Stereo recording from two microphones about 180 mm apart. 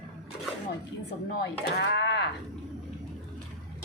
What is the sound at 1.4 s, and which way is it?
Speech, 70° left (ahead or behind).